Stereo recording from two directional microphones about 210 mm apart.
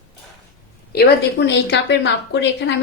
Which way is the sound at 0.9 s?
55° left (ahead or behind).